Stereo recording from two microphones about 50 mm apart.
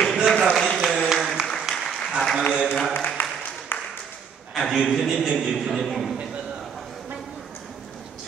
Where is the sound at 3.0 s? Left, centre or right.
Left.